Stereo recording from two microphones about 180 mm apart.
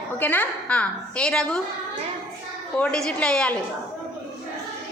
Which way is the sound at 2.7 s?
5° left (ahead or behind).